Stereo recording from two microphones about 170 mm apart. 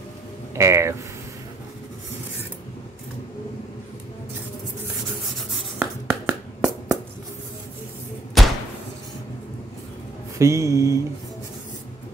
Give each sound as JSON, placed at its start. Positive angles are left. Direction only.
{"t": 0.6, "sound": "speech", "side_deg": -15}
{"t": 5.8, "sound": "a sound", "side_deg": -10}
{"t": 8.4, "sound": "slam", "side_deg": 0}
{"t": 10.3, "sound": "speech", "side_deg": -20}